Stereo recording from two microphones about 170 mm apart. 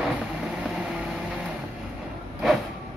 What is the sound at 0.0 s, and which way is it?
Vehicle, 5° right (ahead or behind).